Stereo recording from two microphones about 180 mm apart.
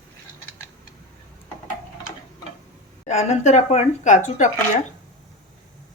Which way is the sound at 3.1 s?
40° left (ahead or behind).